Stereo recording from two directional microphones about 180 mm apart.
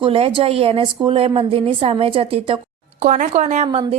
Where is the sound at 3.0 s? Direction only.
45° right (ahead or behind).